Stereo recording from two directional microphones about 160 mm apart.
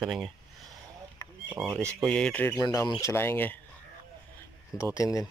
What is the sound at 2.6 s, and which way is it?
Speech, 25° left (ahead or behind).